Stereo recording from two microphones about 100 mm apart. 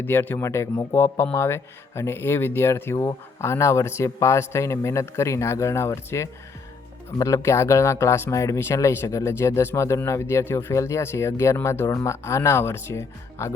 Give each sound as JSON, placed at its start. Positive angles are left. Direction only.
{"t": 0.0, "sound": "speech", "side_deg": 20}